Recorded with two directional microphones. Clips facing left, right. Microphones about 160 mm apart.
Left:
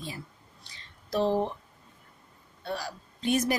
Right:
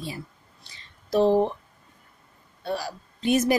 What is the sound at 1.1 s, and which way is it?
Speech, 15° right (ahead or behind).